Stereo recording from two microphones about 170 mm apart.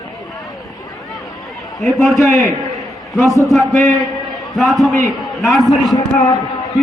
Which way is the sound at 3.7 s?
Centre (ahead or behind).